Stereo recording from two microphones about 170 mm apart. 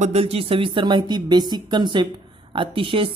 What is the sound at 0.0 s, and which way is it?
Speech, 35° right (ahead or behind).